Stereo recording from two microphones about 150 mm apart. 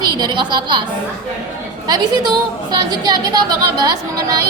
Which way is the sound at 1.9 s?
25° right (ahead or behind).